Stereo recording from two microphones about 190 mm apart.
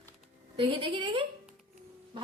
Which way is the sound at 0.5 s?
25° right (ahead or behind).